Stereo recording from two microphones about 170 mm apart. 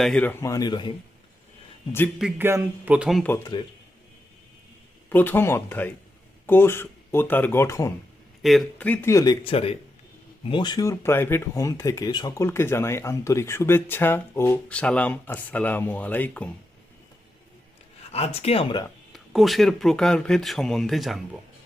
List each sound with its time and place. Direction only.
0.0 s speech: 5° left (ahead or behind); by 0.9 s 25° left (ahead or behind)
2.4 s speech: 10° right (ahead or behind)
3.2 s speech: 15° left (ahead or behind)
5.0 s speech: 10° left (ahead or behind)
8.4 s speech: centre (ahead or behind)
18.1 s speech: 35° left (ahead or behind)
19.1 s speech: centre (ahead or behind)